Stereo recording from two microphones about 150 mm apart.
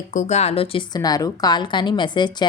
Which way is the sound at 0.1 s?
50° left (ahead or behind).